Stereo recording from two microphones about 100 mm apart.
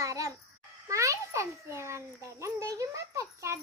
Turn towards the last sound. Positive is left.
turn(degrees=-30)  # may be behind; listen again after turning